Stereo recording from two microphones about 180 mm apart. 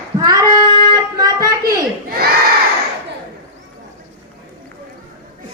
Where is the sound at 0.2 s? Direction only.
25° right (ahead or behind).